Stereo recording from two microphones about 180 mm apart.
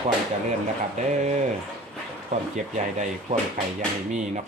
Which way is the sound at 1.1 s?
40° right (ahead or behind).